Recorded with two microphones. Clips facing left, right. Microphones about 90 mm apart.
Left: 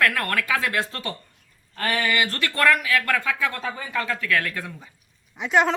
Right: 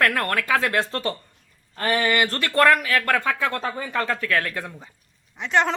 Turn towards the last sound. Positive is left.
turn(degrees=10)  # may be behind; listen again after turning